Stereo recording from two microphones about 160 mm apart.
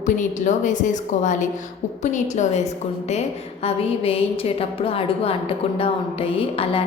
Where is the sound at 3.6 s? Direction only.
35° left (ahead or behind).